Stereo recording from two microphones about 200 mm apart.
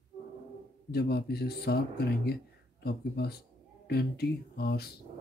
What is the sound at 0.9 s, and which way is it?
A woman's voice, 50° left (ahead or behind).